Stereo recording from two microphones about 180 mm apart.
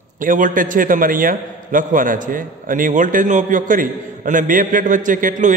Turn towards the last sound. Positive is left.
turn(degrees=-45)  # may be behind; listen again after turning